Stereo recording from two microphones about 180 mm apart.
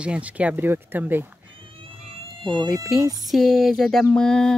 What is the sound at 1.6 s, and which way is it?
Cat, 30° right (ahead or behind).